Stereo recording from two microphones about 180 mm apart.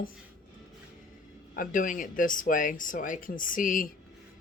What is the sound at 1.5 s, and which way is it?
Speech, 50° left (ahead or behind).